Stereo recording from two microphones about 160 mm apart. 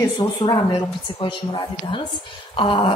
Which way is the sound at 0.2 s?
20° left (ahead or behind).